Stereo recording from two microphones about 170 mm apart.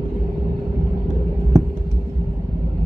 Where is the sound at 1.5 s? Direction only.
20° right (ahead or behind).